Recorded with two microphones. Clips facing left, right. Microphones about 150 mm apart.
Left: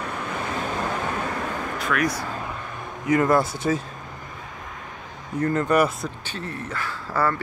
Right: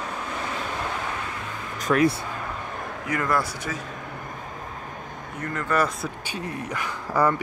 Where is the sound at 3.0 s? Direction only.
25° left (ahead or behind).